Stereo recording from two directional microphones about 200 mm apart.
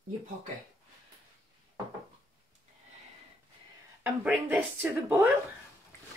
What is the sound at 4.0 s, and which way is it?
Speech, 10° right (ahead or behind).